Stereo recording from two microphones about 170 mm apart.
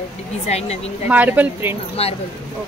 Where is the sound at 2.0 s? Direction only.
35° left (ahead or behind).